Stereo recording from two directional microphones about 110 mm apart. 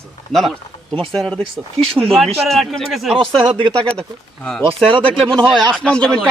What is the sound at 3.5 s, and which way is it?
Speech, 55° right (ahead or behind).